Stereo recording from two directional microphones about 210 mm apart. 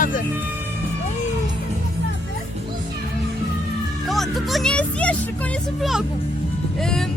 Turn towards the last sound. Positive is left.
turn(degrees=0)  # may be behind; listen again after turning